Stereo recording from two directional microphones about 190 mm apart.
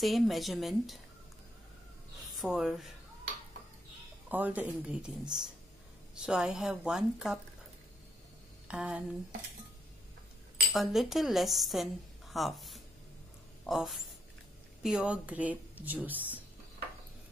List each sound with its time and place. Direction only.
0.0 s a woman's voice: centre (ahead or behind)
2.4 s a woman's voice: centre (ahead or behind)
4.3 s a woman's voice: 10° right (ahead or behind)
8.6 s speech: 5° right (ahead or behind)
10.7 s a woman's voice: centre (ahead or behind)